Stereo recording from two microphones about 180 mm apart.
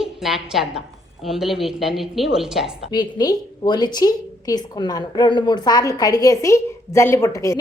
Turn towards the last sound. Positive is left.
turn(degrees=15)  # may be behind; listen again after turning